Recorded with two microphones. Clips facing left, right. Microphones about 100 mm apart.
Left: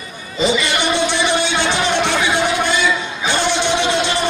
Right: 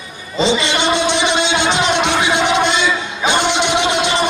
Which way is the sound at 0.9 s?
20° right (ahead or behind).